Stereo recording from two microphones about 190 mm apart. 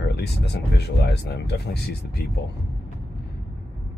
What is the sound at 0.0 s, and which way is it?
Speech, 60° left (ahead or behind).